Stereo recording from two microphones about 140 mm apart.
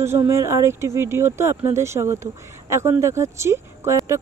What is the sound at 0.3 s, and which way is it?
Speech, 20° right (ahead or behind).